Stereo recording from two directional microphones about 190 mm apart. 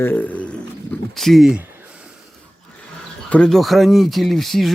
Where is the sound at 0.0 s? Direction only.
10° left (ahead or behind).